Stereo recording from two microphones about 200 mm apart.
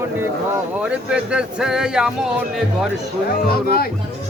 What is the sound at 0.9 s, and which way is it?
Speech, 5° right (ahead or behind).